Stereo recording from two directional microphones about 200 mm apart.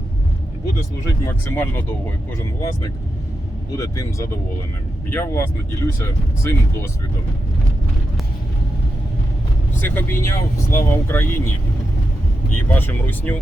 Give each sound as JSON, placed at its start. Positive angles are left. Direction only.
{"t": 1.0, "sound": "speech", "side_deg": 15}
{"t": 3.8, "sound": "speech", "side_deg": 15}
{"t": 9.8, "sound": "speech", "side_deg": 10}
{"t": 12.5, "sound": "speech", "side_deg": 10}